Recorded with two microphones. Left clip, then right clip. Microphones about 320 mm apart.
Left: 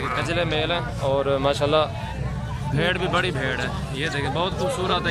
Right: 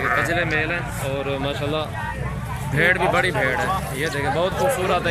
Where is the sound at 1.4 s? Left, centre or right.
Left.